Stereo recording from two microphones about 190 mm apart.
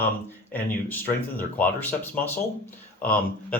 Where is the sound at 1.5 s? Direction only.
10° left (ahead or behind).